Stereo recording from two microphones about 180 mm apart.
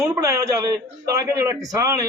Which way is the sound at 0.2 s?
15° right (ahead or behind).